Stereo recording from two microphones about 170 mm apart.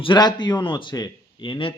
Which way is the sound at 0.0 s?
25° left (ahead or behind).